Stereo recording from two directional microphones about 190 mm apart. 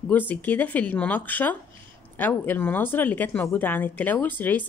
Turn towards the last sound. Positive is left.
turn(degrees=10)  # may be behind; listen again after turning